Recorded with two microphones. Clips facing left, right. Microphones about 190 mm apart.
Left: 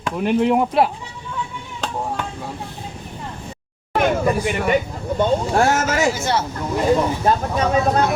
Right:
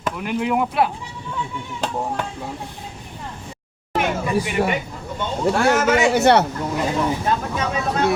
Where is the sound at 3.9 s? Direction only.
40° left (ahead or behind).